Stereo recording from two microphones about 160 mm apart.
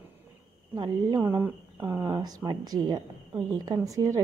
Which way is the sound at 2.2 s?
25° right (ahead or behind).